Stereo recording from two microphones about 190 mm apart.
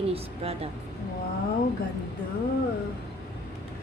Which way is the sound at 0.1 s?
30° right (ahead or behind).